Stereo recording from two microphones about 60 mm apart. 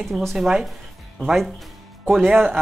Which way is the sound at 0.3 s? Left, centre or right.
Centre.